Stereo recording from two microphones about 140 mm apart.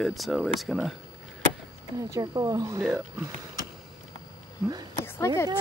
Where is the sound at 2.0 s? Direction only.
25° right (ahead or behind).